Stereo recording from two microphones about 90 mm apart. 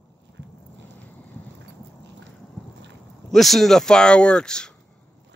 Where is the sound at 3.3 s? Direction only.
Centre (ahead or behind).